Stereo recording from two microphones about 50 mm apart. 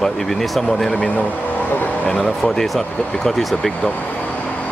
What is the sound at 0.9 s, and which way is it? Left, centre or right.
Speech, left.